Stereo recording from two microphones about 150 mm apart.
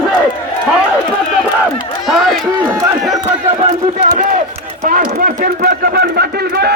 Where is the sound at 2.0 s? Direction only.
Centre (ahead or behind).